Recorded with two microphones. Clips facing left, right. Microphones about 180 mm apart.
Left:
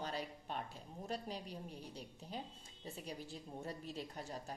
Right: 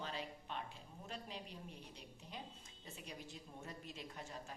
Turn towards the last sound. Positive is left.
turn(degrees=35)  # may be behind; listen again after turning